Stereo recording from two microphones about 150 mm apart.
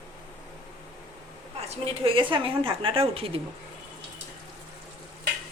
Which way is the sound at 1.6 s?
35° right (ahead or behind).